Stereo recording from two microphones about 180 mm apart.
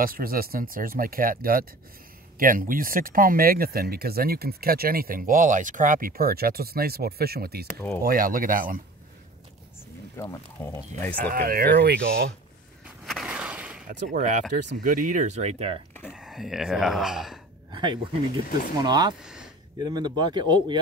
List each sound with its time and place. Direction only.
0.0 s speech: 55° right (ahead or behind)
10.1 s speech: 15° left (ahead or behind)
11.1 s speech: 55° right (ahead or behind)
12.8 s a sound: centre (ahead or behind)
13.8 s speech: 45° right (ahead or behind)
16.1 s speech: 5° right (ahead or behind)
17.6 s speech: 25° right (ahead or behind)